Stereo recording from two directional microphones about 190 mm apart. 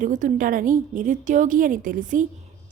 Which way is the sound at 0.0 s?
40° right (ahead or behind).